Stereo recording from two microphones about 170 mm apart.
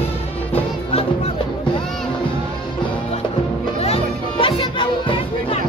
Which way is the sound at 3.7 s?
35° left (ahead or behind).